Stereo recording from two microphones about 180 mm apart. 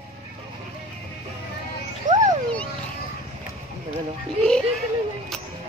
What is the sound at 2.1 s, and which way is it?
Music, 45° right (ahead or behind).